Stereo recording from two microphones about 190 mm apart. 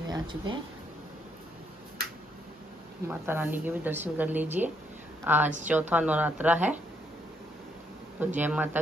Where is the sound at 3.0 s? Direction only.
10° right (ahead or behind).